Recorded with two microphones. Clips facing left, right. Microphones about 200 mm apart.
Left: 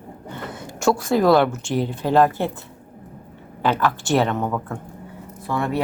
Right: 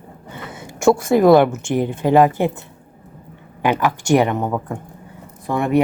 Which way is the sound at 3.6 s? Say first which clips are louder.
Right 2 dB; 15° right (ahead or behind).